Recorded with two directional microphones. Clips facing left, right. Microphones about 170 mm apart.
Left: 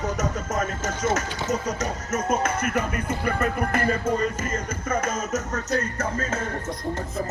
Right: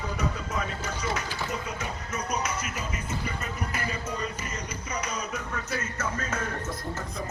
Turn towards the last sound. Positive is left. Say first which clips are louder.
# left 7 dB
turn(degrees=40)  # may be behind; listen again after turning